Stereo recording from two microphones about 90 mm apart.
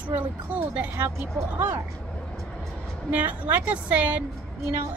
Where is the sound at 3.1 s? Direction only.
20° right (ahead or behind).